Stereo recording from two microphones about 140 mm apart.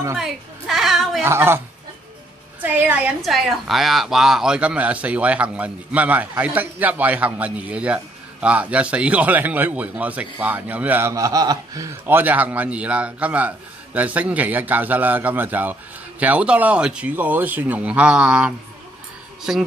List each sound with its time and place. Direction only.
0.2 s a sound: centre (ahead or behind)
1.2 s a woman's voice: 15° right (ahead or behind)
2.6 s a woman's voice: 15° right (ahead or behind)